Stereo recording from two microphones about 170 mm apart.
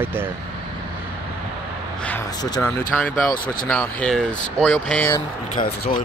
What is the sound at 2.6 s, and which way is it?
Speech, 10° left (ahead or behind).